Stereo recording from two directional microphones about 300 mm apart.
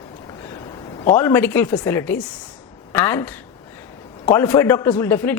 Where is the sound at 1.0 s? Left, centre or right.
Centre.